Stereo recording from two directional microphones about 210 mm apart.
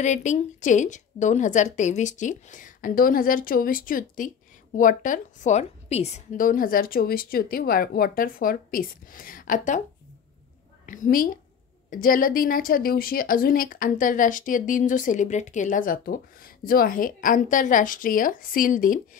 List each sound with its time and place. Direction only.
0.0 s a woman's voice: 35° left (ahead or behind)
10.9 s a woman's voice: 40° left (ahead or behind)